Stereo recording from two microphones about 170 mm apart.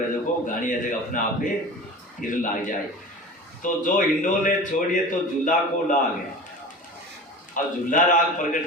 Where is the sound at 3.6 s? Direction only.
50° left (ahead or behind).